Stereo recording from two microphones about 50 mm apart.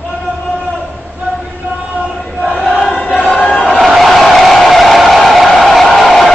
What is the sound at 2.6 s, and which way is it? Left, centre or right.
Choir, left.